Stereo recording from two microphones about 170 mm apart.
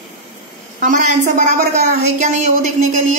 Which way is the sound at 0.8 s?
50° right (ahead or behind).